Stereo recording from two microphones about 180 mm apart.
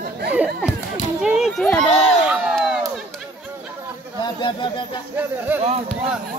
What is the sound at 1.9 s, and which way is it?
Crowd, centre (ahead or behind).